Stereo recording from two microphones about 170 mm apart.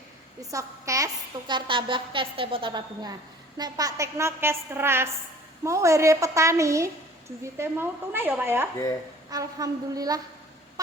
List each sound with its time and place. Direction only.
0.5 s a woman's voice: 20° right (ahead or behind)